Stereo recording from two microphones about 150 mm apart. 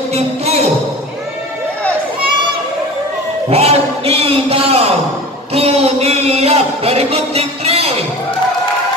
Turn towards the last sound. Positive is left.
turn(degrees=-45)  # may be behind; listen again after turning